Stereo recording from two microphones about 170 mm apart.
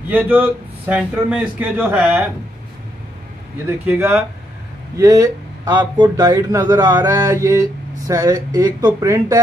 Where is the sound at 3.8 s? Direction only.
10° right (ahead or behind).